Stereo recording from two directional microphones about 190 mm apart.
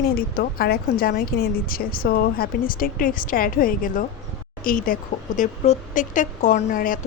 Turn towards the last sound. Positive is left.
turn(degrees=45)  # may be behind; listen again after turning